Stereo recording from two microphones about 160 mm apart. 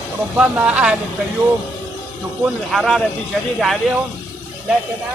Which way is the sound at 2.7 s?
Centre (ahead or behind).